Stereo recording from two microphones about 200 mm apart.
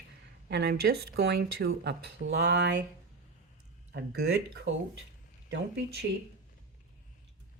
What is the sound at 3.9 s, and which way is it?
Speech, 55° right (ahead or behind).